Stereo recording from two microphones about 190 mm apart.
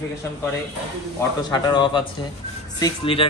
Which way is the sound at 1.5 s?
25° left (ahead or behind).